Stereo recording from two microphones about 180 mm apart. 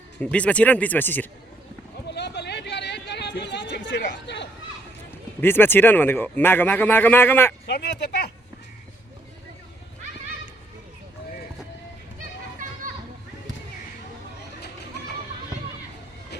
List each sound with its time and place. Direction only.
0.2 s speech: 5° left (ahead or behind)
2.0 s a sound: 75° left (ahead or behind)
5.4 s speech: 10° left (ahead or behind)
7.7 s speech: 70° left (ahead or behind)